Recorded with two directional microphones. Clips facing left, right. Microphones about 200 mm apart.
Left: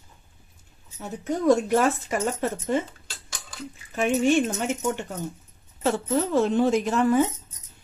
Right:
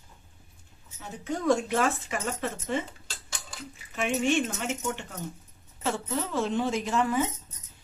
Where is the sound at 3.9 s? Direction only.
40° left (ahead or behind).